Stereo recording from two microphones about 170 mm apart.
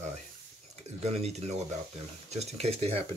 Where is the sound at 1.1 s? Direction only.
40° right (ahead or behind).